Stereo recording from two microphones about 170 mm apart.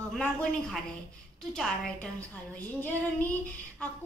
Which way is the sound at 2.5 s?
10° left (ahead or behind).